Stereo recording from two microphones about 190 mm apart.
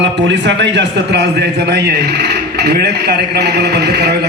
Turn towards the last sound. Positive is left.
turn(degrees=-60)  # may be behind; listen again after turning